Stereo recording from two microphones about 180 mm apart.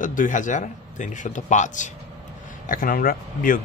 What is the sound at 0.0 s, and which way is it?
Speech, 45° left (ahead or behind).